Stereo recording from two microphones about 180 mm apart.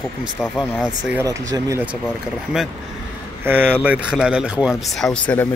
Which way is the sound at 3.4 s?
10° right (ahead or behind).